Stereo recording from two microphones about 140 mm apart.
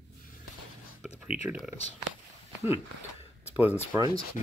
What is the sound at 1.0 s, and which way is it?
Speech, 10° right (ahead or behind).